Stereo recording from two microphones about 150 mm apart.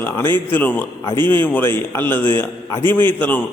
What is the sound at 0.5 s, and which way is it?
A man's voice, 10° left (ahead or behind).